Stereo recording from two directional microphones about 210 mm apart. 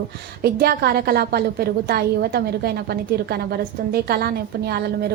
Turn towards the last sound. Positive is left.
turn(degrees=-50)  # may be behind; listen again after turning